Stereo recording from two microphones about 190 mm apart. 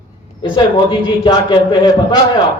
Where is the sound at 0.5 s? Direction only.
25° left (ahead or behind).